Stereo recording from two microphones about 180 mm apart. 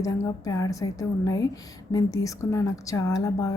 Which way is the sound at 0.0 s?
20° left (ahead or behind).